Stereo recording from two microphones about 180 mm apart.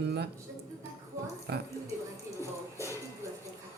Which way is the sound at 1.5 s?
65° right (ahead or behind).